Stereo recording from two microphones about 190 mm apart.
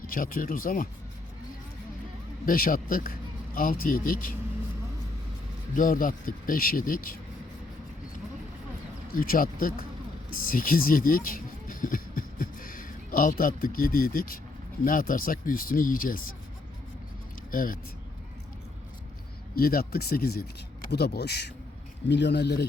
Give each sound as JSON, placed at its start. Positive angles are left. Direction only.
{"t": 0.1, "sound": "speech", "side_deg": 50}
{"t": 2.5, "sound": "speech", "side_deg": 45}
{"t": 5.7, "sound": "speech", "side_deg": 45}
{"t": 9.1, "sound": "speech", "side_deg": 50}
{"t": 17.5, "sound": "speech", "side_deg": 50}
{"t": 19.5, "sound": "speech", "side_deg": 50}